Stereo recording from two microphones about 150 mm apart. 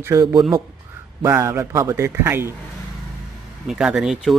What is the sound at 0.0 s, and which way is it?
Speech, 20° right (ahead or behind).